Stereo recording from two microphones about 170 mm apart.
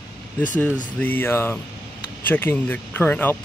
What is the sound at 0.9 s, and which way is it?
Speech, 10° left (ahead or behind).